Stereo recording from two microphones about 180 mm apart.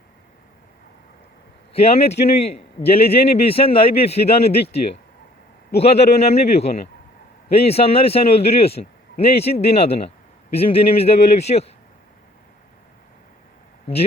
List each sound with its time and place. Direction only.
1.7 s a man's voice: 35° left (ahead or behind)